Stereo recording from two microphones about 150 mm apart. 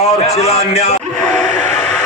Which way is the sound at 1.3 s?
55° right (ahead or behind).